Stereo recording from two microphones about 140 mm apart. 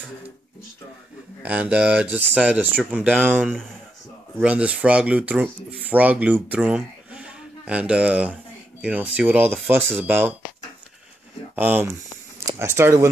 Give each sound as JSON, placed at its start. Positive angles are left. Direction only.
{"t": 1.4, "sound": "speech", "side_deg": -10}
{"t": 11.5, "sound": "speech", "side_deg": -15}